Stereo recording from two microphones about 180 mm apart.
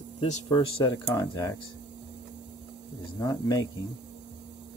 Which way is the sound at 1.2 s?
20° left (ahead or behind).